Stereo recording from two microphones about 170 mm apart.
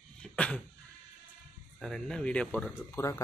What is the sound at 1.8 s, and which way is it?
Speech, 5° left (ahead or behind).